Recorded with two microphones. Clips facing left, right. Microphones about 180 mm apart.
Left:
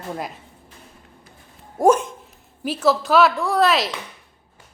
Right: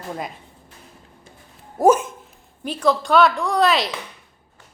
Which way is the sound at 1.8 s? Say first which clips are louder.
Right 1 dB; 5° right (ahead or behind).